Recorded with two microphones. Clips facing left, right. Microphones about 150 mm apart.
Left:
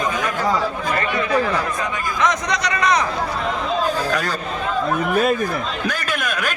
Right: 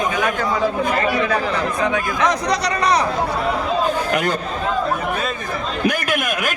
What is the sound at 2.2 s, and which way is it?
Speech, 35° right (ahead or behind).